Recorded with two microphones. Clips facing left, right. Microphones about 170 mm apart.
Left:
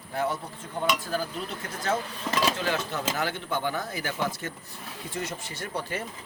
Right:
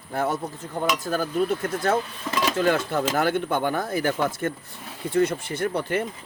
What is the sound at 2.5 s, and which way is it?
Speech, 50° right (ahead or behind).